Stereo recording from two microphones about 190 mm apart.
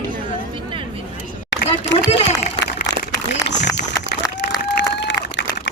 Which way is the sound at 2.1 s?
35° left (ahead or behind).